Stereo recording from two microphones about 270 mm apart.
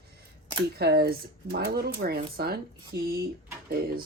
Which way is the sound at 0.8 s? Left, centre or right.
Right.